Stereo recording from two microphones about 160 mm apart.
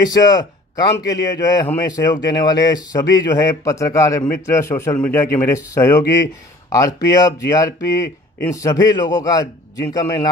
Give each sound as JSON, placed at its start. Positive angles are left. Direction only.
{"t": 0.0, "sound": "speech", "side_deg": 25}